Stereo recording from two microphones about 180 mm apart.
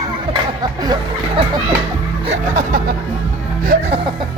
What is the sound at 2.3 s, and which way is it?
Speech, 40° right (ahead or behind).